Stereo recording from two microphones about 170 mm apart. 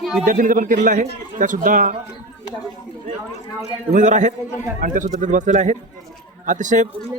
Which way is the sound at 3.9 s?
50° right (ahead or behind).